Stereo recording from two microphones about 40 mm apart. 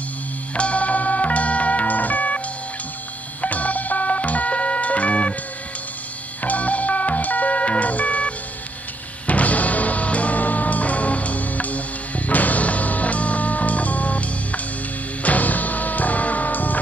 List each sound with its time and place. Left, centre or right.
0.6 s music: left
6.4 s music: left